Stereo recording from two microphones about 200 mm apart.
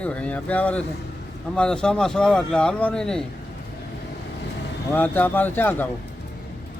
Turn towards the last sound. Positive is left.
turn(degrees=10)  # may be behind; listen again after turning